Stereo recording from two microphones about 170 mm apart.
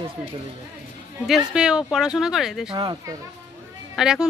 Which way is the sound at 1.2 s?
5° right (ahead or behind).